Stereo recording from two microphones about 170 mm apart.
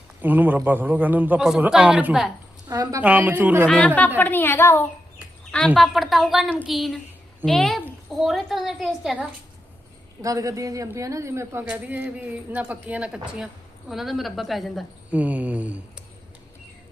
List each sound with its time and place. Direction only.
0.2 s a woman's voice: 10° right (ahead or behind)
2.6 s a woman's voice: 20° right (ahead or behind)
3.0 s a woman's voice: 10° right (ahead or behind)
3.7 s a woman's voice: 5° left (ahead or behind)
10.2 s a woman's voice: 20° right (ahead or behind)